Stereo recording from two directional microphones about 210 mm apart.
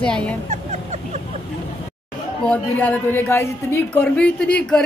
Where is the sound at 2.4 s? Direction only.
5° left (ahead or behind).